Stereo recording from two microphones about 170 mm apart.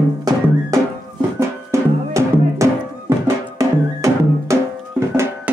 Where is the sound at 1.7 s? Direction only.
15° right (ahead or behind).